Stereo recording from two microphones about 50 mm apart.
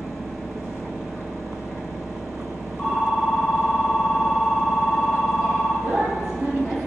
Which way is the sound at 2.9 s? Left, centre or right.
Centre.